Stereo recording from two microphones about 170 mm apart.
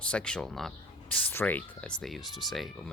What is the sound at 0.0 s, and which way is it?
Speech, 5° left (ahead or behind).